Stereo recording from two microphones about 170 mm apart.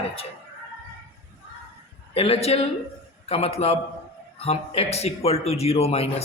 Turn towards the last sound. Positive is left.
turn(degrees=35)  # may be behind; listen again after turning